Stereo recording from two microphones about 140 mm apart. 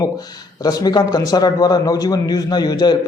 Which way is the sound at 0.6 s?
30° left (ahead or behind).